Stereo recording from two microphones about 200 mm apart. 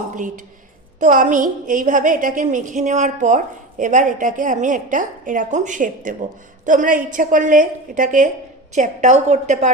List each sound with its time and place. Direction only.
0.9 s a woman's voice: 40° right (ahead or behind)